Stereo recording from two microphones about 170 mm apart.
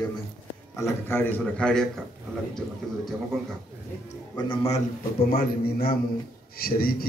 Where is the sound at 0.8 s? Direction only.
10° left (ahead or behind).